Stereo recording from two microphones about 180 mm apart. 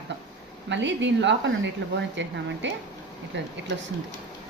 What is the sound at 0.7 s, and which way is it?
Speech, 85° right.